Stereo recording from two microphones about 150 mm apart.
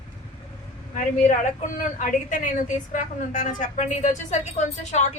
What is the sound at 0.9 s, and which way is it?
A woman's voice, 60° left (ahead or behind).